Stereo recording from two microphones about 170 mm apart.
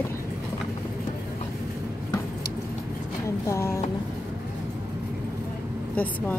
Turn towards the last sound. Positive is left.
turn(degrees=10)  # may be behind; listen again after turning